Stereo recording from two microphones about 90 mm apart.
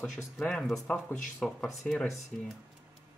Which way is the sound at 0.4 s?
5° left (ahead or behind).